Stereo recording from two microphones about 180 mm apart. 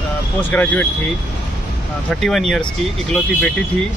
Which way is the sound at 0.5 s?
10° left (ahead or behind).